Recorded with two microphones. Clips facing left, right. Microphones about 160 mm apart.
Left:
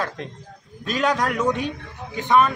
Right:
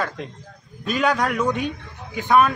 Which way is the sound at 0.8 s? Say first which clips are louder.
Right 1 dB; 5° right (ahead or behind).